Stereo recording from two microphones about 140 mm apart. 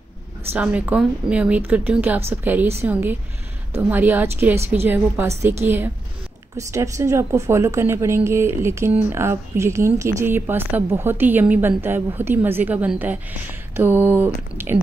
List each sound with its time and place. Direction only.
0.5 s a woman's voice: 10° right (ahead or behind)